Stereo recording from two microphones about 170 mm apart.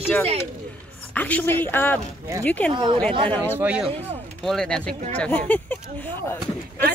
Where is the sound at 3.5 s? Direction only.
5° right (ahead or behind).